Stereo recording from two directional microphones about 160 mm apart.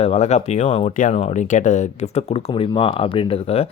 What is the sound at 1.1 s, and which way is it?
Speech, 40° left (ahead or behind).